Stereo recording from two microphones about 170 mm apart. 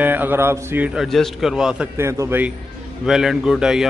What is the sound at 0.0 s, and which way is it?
A man's voice, 10° right (ahead or behind).